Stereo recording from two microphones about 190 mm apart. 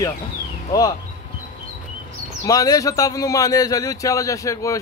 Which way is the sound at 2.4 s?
20° left (ahead or behind).